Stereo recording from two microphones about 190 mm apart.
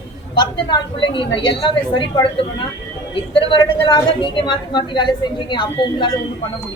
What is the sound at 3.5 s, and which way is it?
A woman's voice, 25° left (ahead or behind).